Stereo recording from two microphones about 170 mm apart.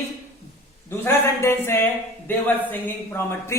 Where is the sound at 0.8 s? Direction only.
15° left (ahead or behind).